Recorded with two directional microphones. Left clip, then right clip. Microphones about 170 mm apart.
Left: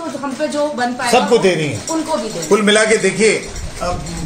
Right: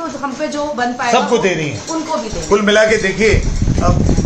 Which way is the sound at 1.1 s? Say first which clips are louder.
Left 2 dB; 45° left (ahead or behind).